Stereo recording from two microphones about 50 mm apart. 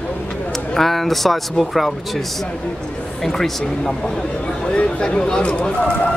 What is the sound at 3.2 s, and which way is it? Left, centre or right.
Speech, centre.